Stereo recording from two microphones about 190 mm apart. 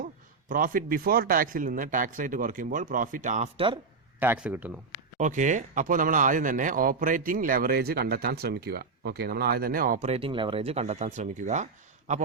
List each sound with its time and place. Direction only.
0.0 s speech: 45° right (ahead or behind)
4.2 s speech: 10° right (ahead or behind)
5.1 s speech: 40° right (ahead or behind)
10.1 s speech: 30° right (ahead or behind)